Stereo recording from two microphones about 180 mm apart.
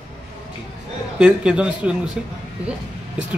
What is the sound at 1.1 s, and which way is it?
Speech, 5° right (ahead or behind).